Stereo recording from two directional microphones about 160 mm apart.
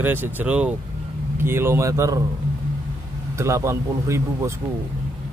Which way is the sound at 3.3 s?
20° right (ahead or behind).